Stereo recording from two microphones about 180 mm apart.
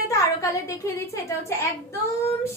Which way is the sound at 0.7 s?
15° left (ahead or behind).